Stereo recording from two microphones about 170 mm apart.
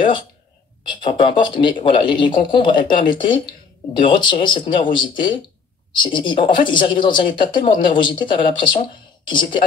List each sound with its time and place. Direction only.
0.8 s speech: 25° left (ahead or behind)